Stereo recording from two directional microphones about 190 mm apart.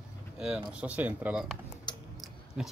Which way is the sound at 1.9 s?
25° left (ahead or behind).